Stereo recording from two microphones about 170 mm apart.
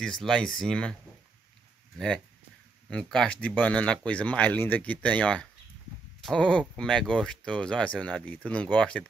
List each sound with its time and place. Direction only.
0.0 s speech: centre (ahead or behind)
2.0 s speech: centre (ahead or behind)